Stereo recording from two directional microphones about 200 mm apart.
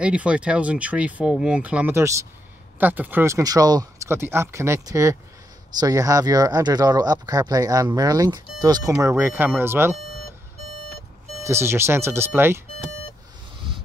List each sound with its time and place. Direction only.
0.0 s speech: 5° right (ahead or behind)
9.9 s alarm clock: 45° left (ahead or behind)
11.4 s speech: 15° right (ahead or behind)